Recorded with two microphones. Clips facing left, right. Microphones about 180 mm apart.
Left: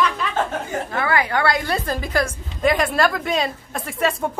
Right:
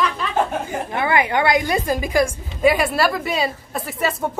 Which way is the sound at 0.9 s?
20° right (ahead or behind).